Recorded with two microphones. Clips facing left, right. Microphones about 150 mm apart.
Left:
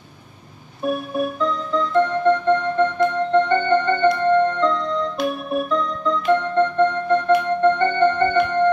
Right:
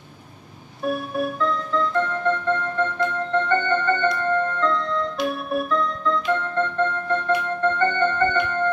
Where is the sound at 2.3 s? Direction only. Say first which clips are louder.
Left 6 dB; 20° left (ahead or behind).